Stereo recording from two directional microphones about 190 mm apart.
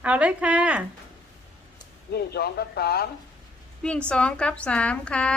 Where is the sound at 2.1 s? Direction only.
55° left (ahead or behind).